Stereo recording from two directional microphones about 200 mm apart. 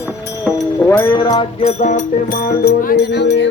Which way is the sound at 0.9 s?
15° left (ahead or behind).